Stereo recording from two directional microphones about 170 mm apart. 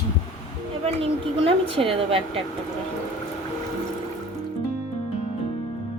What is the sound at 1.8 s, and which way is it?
Speech, 35° right (ahead or behind).